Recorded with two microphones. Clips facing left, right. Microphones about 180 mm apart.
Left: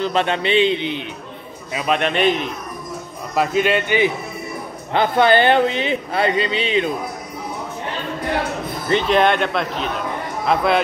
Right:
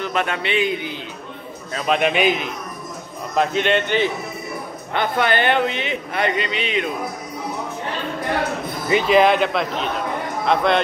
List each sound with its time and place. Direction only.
0.0 s a man's voice: 30° left (ahead or behind)
1.7 s a man's voice: 10° left (ahead or behind)
2.0 s a man's voice: 5° right (ahead or behind)
4.9 s speech: 30° left (ahead or behind)
8.8 s a man's voice: 5° right (ahead or behind)